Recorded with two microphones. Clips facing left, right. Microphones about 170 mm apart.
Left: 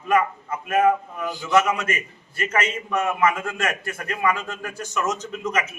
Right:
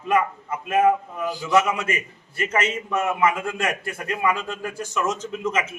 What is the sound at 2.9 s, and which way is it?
A man's voice, 20° right (ahead or behind).